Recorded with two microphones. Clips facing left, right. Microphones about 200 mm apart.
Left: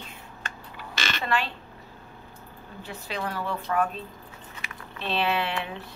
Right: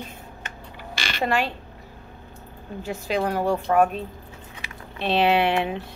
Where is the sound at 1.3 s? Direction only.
40° right (ahead or behind).